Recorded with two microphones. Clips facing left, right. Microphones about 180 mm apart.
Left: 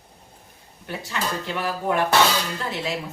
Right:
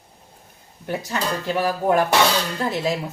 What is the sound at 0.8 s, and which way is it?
A woman's voice, 40° right (ahead or behind).